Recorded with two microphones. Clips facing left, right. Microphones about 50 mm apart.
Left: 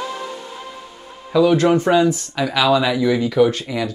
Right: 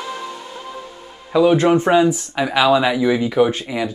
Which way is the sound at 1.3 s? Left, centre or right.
Right.